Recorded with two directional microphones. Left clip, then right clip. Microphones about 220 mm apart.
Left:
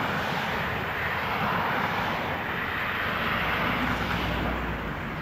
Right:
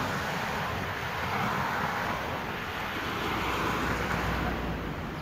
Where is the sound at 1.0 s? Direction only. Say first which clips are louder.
Left 3 dB; 55° right (ahead or behind).